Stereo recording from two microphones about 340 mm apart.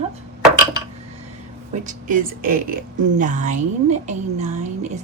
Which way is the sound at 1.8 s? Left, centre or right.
Right.